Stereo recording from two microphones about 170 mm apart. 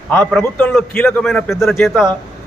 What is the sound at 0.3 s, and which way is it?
A man's voice, 5° left (ahead or behind).